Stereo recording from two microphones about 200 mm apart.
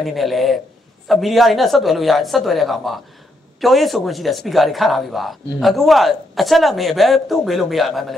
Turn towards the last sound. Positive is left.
turn(degrees=0)  # may be behind; listen again after turning